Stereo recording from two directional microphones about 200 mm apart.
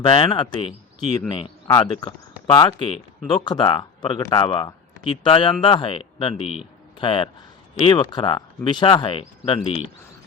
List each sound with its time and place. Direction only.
0.0 s speech: 25° left (ahead or behind)